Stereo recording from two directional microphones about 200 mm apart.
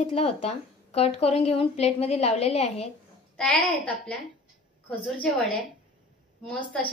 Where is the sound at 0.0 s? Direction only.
30° left (ahead or behind).